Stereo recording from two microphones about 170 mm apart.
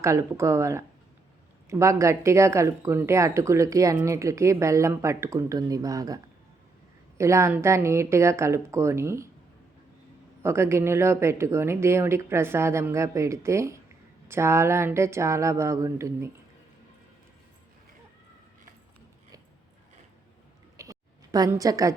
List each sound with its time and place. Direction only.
0.0 s speech: 15° right (ahead or behind)
7.2 s speech: 15° right (ahead or behind)
10.4 s speech: 15° right (ahead or behind)
20.7 s a sound: 20° right (ahead or behind)